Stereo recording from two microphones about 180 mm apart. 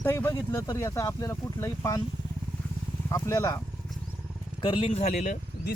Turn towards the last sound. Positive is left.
turn(degrees=45)  # may be behind; listen again after turning